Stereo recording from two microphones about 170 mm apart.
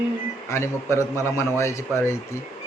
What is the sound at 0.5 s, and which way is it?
A man's voice, 15° left (ahead or behind).